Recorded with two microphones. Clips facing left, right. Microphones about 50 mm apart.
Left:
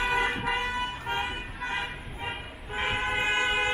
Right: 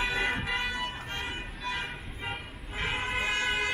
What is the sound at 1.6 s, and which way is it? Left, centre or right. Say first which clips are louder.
Vehicle: left 3 dB; left.